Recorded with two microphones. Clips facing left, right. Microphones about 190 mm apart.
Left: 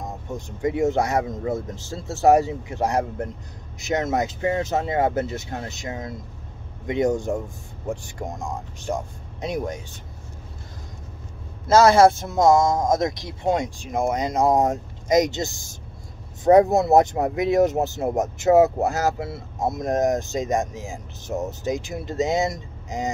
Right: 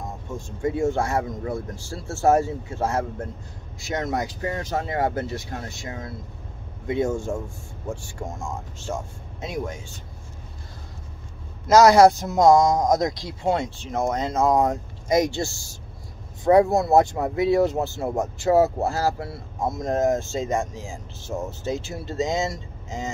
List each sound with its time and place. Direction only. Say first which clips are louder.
0.3 s speech: left 1 dB; 20° left (ahead or behind)
11.6 s speech: right 1 dB; 30° left (ahead or behind)